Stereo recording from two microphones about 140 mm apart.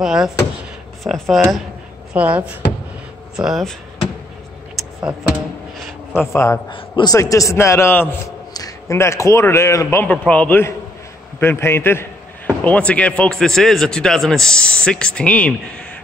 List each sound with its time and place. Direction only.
0.0 s speech: 5° right (ahead or behind)
6.3 s a man's voice: 20° left (ahead or behind)
6.7 s a man's voice: 35° left (ahead or behind)
7.2 s a man's voice: 20° left (ahead or behind)